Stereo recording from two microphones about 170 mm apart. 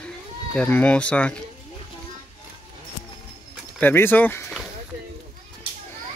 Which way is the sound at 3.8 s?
10° left (ahead or behind).